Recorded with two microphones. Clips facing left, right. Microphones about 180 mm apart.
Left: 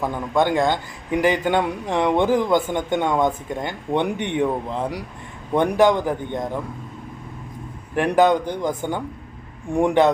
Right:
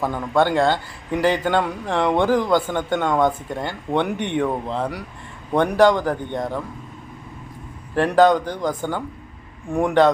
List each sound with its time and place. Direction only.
0.0 s speech: 15° left (ahead or behind)
7.9 s speech: 15° left (ahead or behind)